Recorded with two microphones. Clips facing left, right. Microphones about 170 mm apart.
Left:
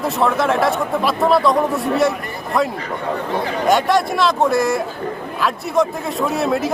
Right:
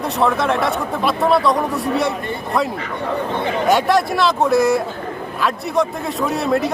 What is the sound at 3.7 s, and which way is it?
A man's voice, centre (ahead or behind).